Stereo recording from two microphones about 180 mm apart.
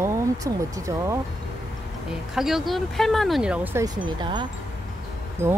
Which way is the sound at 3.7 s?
20° right (ahead or behind).